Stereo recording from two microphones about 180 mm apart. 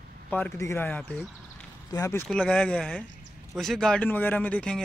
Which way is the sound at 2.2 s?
5° left (ahead or behind).